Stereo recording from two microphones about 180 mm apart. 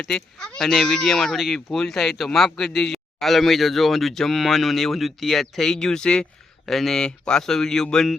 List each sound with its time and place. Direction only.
0.0 s speech: 5° left (ahead or behind)